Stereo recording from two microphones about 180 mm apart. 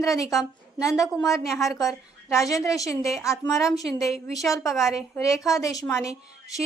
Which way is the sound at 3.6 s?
Centre (ahead or behind).